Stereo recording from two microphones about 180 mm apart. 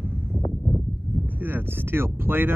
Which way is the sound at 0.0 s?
10° right (ahead or behind).